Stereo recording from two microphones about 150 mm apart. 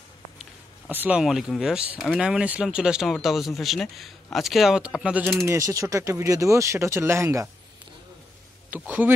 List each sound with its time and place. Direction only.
0.4 s speech: 10° right (ahead or behind)
5.5 s speech: 20° right (ahead or behind)
8.6 s speech: 10° right (ahead or behind)